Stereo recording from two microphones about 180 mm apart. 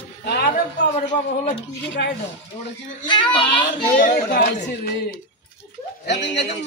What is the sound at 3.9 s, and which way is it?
Speech, 55° left (ahead or behind).